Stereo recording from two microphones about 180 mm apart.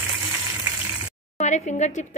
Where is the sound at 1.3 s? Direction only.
40° left (ahead or behind).